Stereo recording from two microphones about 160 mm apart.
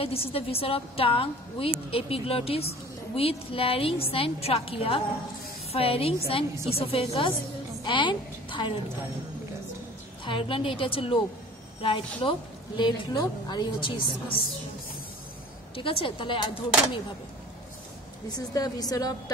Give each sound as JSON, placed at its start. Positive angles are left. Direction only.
{"t": 0.0, "sound": "a woman's voice", "side_deg": 35}
{"t": 10.2, "sound": "a woman's voice", "side_deg": 30}
{"t": 15.7, "sound": "a woman's voice", "side_deg": 35}
{"t": 18.3, "sound": "a woman's voice", "side_deg": 25}